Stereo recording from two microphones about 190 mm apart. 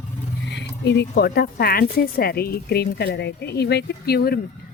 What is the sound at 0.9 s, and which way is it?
A woman's voice, 60° left (ahead or behind).